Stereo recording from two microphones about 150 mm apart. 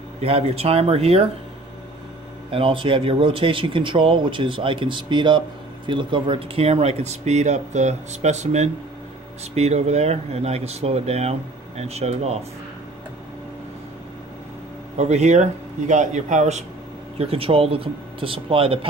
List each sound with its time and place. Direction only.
0.2 s speech: 40° right (ahead or behind)
2.5 s speech: 35° right (ahead or behind)
15.0 s speech: 50° right (ahead or behind)
17.2 s speech: 40° right (ahead or behind)